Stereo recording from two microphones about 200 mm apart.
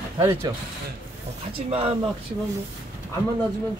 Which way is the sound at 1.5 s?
30° right (ahead or behind).